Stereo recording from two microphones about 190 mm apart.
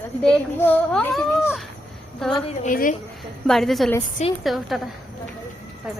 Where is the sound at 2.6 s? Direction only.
45° left (ahead or behind).